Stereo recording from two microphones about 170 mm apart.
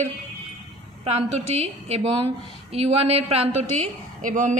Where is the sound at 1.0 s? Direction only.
35° right (ahead or behind).